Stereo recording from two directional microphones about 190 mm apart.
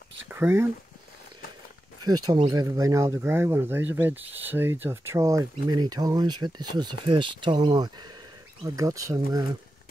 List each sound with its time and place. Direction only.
0.3 s speech: 10° right (ahead or behind)
2.0 s speech: 25° right (ahead or behind)